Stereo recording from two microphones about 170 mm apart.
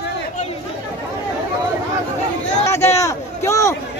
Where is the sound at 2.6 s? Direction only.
15° left (ahead or behind).